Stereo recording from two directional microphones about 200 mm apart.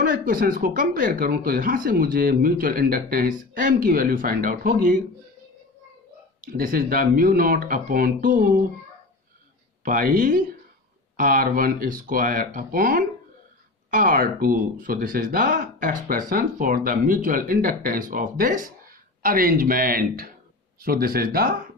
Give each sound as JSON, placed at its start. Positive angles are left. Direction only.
{"t": 0.0, "sound": "speech", "side_deg": -45}
{"t": 6.4, "sound": "speech", "side_deg": -45}
{"t": 9.8, "sound": "speech", "side_deg": -45}